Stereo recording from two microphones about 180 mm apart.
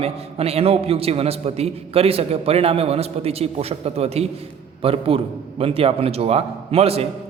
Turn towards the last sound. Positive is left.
turn(degrees=-35)  # may be behind; listen again after turning